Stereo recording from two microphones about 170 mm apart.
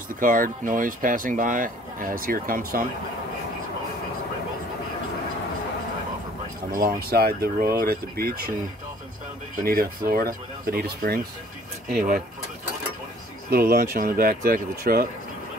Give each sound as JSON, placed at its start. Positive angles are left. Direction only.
{"t": 0.1, "sound": "speech", "side_deg": -55}
{"t": 6.7, "sound": "speech", "side_deg": -60}
{"t": 9.6, "sound": "speech", "side_deg": -60}
{"t": 13.5, "sound": "speech", "side_deg": -65}